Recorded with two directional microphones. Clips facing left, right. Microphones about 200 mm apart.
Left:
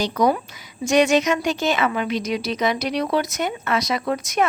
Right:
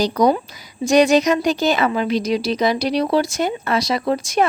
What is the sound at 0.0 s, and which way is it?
A woman's voice, 35° right (ahead or behind).